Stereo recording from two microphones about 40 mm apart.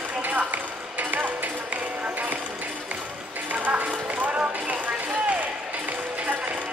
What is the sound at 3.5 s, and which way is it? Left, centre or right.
Clip-clop, right.